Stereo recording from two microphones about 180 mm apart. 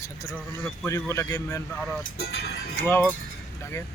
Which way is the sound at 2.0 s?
65° left (ahead or behind).